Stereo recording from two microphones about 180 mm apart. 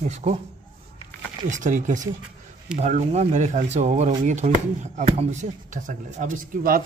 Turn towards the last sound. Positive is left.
turn(degrees=-50)  # may be behind; listen again after turning